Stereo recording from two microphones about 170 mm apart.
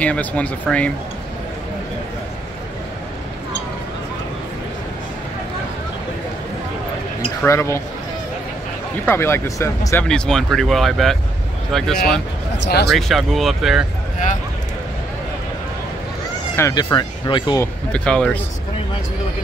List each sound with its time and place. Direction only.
0.0 s speech: 10° left (ahead or behind)
7.4 s speech: 15° left (ahead or behind)
9.0 s speech: 15° left (ahead or behind)
10.0 s speech: 5° left (ahead or behind)
12.5 s speech: 80° left
12.9 s speech: centre (ahead or behind)
16.5 s speech: 20° left (ahead or behind)
17.9 s speech: 5° left (ahead or behind)